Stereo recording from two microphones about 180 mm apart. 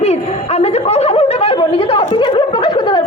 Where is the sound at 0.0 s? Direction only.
35° left (ahead or behind).